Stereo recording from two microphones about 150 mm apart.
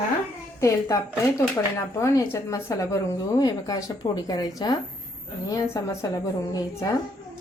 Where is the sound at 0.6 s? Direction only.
20° left (ahead or behind).